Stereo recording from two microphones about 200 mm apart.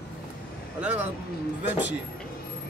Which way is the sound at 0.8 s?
5° right (ahead or behind).